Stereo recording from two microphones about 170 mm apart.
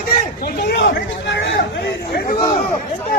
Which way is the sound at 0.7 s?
90° left.